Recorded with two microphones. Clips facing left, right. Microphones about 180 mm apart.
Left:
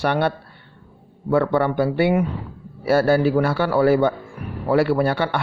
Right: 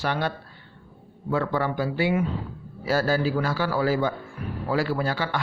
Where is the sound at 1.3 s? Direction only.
55° left (ahead or behind).